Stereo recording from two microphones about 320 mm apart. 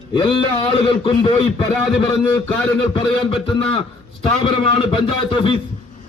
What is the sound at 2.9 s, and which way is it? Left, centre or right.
A man's voice, centre.